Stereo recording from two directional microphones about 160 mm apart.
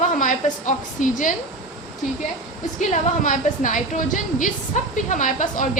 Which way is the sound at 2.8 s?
50° left (ahead or behind).